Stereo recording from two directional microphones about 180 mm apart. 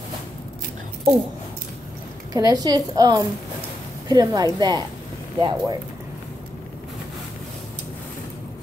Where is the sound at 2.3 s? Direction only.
20° right (ahead or behind).